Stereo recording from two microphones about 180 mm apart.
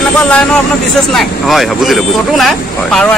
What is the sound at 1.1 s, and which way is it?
Speech, centre (ahead or behind).